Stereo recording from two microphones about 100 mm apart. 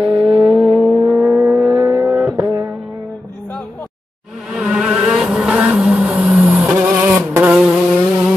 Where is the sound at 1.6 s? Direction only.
30° right (ahead or behind).